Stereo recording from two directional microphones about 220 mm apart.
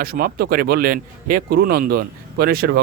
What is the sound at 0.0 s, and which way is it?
Speech, 45° right (ahead or behind).